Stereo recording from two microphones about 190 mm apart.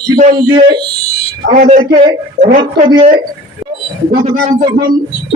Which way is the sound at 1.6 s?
40° right (ahead or behind).